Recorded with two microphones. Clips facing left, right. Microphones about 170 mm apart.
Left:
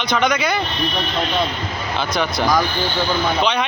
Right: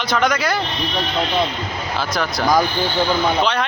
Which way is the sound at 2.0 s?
Centre (ahead or behind).